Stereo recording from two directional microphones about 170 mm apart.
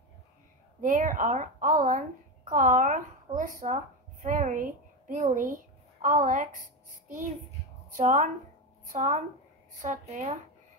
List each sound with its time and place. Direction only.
0.7 s a woman's voice: 50° right (ahead or behind)
7.9 s speech: 50° right (ahead or behind)